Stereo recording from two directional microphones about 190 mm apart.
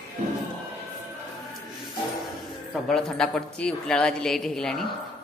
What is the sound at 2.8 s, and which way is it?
Speech, centre (ahead or behind).